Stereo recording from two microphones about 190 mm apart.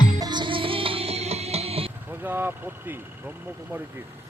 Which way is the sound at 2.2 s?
10° right (ahead or behind).